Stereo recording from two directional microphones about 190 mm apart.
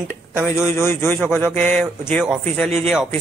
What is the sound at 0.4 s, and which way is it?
Speech, 5° right (ahead or behind).